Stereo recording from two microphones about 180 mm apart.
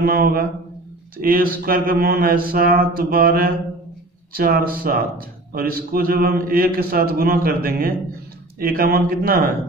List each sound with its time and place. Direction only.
0.0 s speech: 55° right (ahead or behind)